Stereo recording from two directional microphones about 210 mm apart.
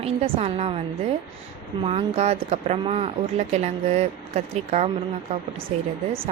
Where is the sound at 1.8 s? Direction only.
30° right (ahead or behind).